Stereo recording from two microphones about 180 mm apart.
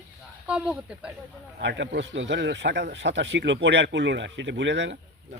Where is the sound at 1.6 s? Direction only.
80° right.